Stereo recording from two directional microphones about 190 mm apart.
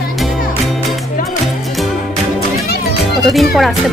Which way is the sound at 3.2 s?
Centre (ahead or behind).